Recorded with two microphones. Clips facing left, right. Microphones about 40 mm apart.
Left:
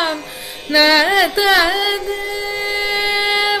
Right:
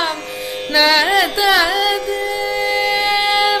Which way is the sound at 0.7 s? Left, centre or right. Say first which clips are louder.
Left 1 dB; centre.